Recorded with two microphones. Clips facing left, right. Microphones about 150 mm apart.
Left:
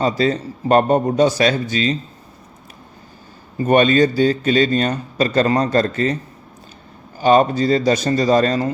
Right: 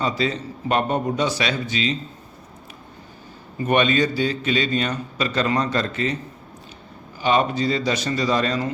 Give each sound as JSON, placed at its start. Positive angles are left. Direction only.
{"t": 0.0, "sound": "a man's voice", "side_deg": 40}
{"t": 3.6, "sound": "a man's voice", "side_deg": 40}
{"t": 7.2, "sound": "a man's voice", "side_deg": 45}